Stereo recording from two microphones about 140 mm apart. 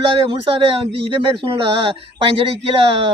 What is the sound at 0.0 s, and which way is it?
A man's voice, 40° right (ahead or behind).